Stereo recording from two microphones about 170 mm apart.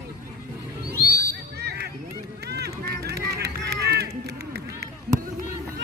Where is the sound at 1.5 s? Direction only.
75° right (ahead or behind).